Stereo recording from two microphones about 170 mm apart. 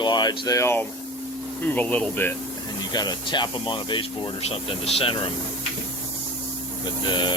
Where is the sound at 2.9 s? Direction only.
25° left (ahead or behind).